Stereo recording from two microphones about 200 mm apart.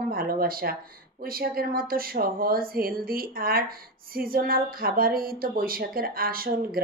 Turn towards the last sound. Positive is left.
turn(degrees=-45)  # may be behind; listen again after turning